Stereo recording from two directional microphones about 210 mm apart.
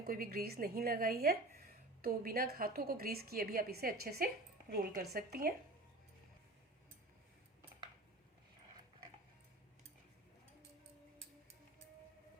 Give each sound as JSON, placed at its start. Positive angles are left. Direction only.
{"t": 0.0, "sound": "a woman's voice", "side_deg": -45}